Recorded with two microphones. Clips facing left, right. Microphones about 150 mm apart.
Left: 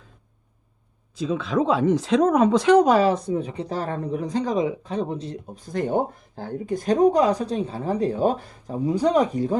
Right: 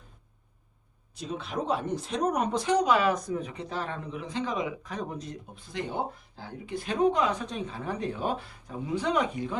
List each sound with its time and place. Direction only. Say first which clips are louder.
1.1 s speech: left 10 dB; 90° left
2.7 s speech: left 4 dB; 45° left (ahead or behind)
5.5 s speech: left 10 dB; 45° left (ahead or behind)